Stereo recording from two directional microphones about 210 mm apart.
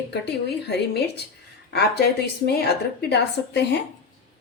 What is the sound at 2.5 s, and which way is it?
A woman's voice, 50° left (ahead or behind).